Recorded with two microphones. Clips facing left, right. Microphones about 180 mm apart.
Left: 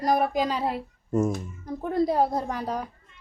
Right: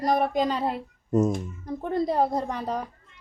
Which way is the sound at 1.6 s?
Centre (ahead or behind).